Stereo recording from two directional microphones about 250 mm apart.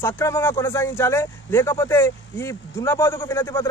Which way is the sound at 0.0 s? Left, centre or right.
Centre.